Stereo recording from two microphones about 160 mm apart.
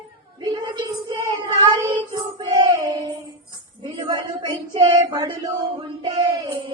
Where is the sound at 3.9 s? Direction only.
25° right (ahead or behind).